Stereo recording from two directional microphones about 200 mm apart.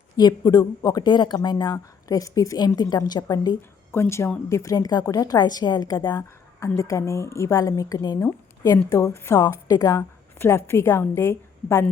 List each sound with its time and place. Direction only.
0.2 s speech: 20° left (ahead or behind)
4.0 s a woman's voice: 10° left (ahead or behind)